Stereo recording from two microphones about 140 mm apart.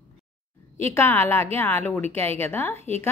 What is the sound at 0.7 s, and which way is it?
Speech, 20° left (ahead or behind).